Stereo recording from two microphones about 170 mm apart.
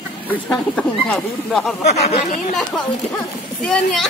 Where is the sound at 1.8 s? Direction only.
40° left (ahead or behind).